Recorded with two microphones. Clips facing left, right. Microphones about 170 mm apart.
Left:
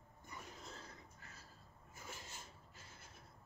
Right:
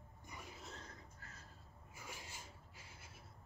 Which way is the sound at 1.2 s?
20° left (ahead or behind).